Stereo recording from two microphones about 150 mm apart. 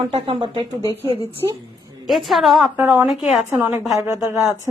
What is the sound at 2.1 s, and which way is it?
A woman's voice, centre (ahead or behind).